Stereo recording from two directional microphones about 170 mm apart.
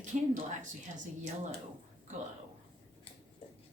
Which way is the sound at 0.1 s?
45° right (ahead or behind).